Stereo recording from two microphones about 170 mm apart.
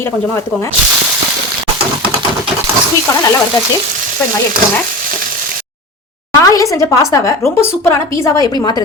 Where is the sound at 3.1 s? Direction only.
20° left (ahead or behind).